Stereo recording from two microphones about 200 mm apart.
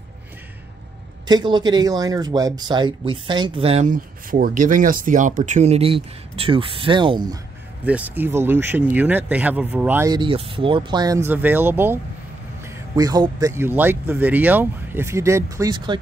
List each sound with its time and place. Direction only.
1.2 s speech: 20° right (ahead or behind)
7.8 s speech: 10° right (ahead or behind)
10.1 s speech: 25° right (ahead or behind)